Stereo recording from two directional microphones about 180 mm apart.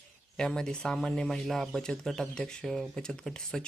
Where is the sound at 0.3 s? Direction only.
5° left (ahead or behind).